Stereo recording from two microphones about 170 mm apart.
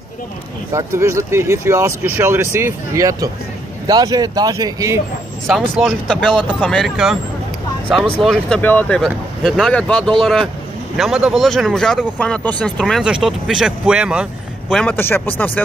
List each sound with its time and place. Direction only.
0.7 s speech: 15° right (ahead or behind)
5.5 s speech: centre (ahead or behind)
8.2 s speech: 5° left (ahead or behind)
14.7 s speech: 5° left (ahead or behind)